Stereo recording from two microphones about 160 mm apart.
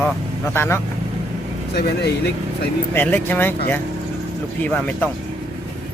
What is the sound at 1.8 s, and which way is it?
Speech, 90° left.